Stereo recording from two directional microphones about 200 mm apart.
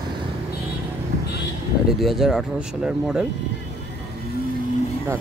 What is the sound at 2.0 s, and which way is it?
Speech, centre (ahead or behind).